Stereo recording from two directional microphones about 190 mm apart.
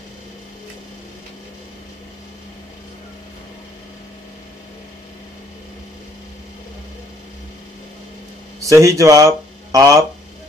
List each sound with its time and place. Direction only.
8.6 s speech: 15° right (ahead or behind)